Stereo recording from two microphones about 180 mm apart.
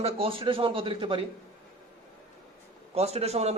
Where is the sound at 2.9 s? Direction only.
35° right (ahead or behind).